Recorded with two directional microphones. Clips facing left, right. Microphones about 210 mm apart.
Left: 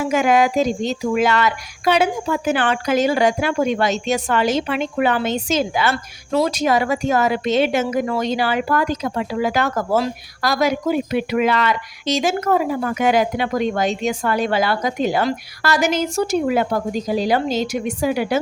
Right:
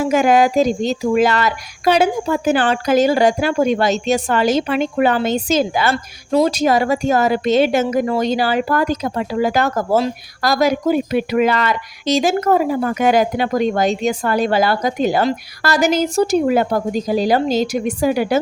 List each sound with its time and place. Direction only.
0.0 s speech: 40° right (ahead or behind)